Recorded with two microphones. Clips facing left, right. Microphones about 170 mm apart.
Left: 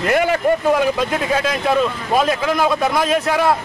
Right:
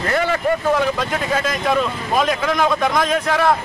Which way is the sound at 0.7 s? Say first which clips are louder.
Left 2 dB; 10° left (ahead or behind).